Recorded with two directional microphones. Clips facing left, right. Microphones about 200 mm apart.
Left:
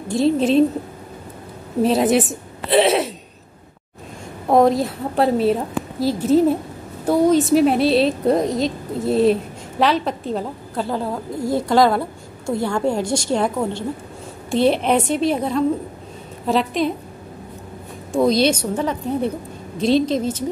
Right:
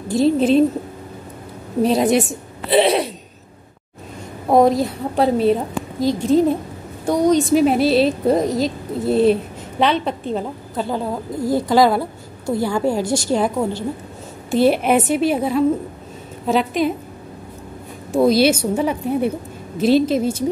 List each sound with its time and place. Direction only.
0.1 s a woman's voice: centre (ahead or behind)
1.8 s a woman's voice: centre (ahead or behind)
4.5 s a woman's voice: centre (ahead or behind)
13.0 s a woman's voice: 25° left (ahead or behind)
13.3 s a woman's voice: 5° right (ahead or behind)
18.1 s a woman's voice: 5° right (ahead or behind)